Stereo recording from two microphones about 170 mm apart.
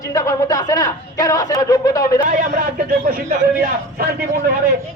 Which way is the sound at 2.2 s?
50° right (ahead or behind).